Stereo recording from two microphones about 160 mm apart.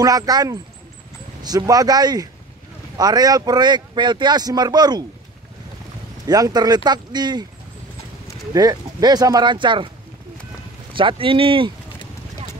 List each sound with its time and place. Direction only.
0.0 s speech: 25° right (ahead or behind)
6.2 s speech: 25° right (ahead or behind)
8.5 s speech: 25° right (ahead or behind)
10.9 s speech: 30° right (ahead or behind)